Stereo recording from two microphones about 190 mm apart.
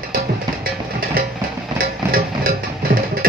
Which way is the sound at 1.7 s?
50° right (ahead or behind).